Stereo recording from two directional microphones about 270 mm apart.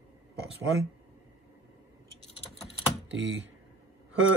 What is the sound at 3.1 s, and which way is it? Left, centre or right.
Speech, right.